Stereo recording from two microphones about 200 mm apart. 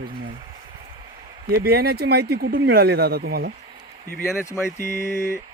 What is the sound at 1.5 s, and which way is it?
Speech, 50° right (ahead or behind).